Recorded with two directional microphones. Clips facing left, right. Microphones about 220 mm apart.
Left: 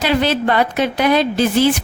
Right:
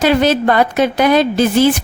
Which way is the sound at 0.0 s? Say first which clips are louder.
Right 4 dB; 45° right (ahead or behind).